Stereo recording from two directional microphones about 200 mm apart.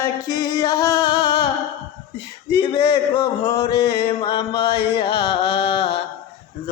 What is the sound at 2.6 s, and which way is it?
Mantra, 25° left (ahead or behind).